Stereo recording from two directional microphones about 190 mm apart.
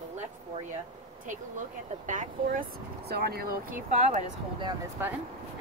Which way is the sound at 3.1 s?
55° right (ahead or behind).